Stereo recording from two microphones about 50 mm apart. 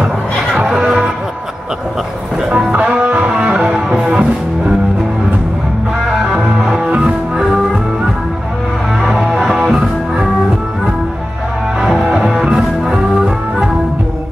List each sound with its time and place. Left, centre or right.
0.7 s music: centre
2.5 s music: centre
6.0 s music: centre
6.4 s music: centre
9.0 s music: centre
11.8 s music: centre